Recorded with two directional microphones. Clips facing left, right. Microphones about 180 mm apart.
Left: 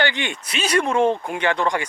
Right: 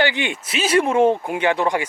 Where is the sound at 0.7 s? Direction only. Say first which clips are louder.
Right 3 dB; 20° right (ahead or behind).